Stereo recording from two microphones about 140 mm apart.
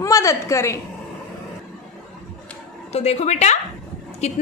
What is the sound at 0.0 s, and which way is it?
Speech, 20° left (ahead or behind).